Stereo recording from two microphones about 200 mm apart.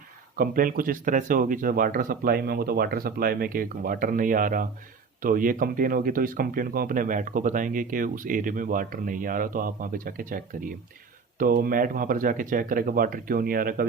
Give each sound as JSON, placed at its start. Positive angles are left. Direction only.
{"t": 0.3, "sound": "speech", "side_deg": -45}